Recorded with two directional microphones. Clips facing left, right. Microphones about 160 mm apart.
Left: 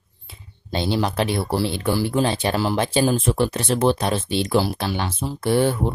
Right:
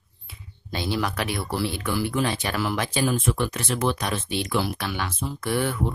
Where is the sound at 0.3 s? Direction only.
30° left (ahead or behind).